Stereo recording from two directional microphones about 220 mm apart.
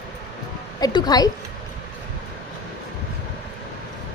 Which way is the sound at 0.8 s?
15° left (ahead or behind).